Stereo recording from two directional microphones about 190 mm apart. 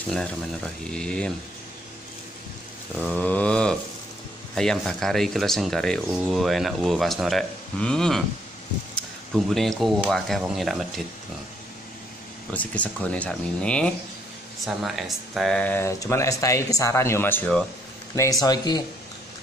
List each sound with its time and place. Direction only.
0.8 s speech: 5° left (ahead or behind)
3.0 s speech: 10° left (ahead or behind)
9.3 s speech: centre (ahead or behind)
12.5 s speech: 5° left (ahead or behind)
18.1 s speech: 15° left (ahead or behind)